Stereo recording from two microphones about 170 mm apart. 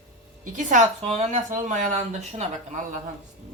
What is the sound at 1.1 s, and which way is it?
Speech, 45° right (ahead or behind).